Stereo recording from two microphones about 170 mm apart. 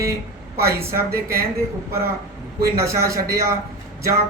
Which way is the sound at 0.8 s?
15° right (ahead or behind).